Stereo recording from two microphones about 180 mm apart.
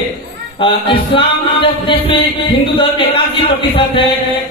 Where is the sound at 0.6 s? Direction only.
30° left (ahead or behind).